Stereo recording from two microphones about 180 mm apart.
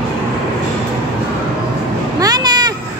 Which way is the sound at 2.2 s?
20° right (ahead or behind).